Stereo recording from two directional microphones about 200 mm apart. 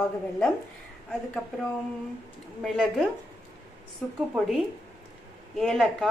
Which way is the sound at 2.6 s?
Centre (ahead or behind).